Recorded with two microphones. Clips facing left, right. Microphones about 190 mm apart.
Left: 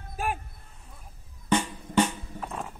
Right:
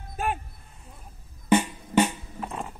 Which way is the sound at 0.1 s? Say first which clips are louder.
Right 2 dB; 5° left (ahead or behind).